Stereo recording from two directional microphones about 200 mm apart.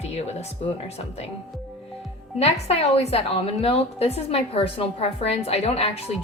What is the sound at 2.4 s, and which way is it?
A woman's voice, 30° left (ahead or behind).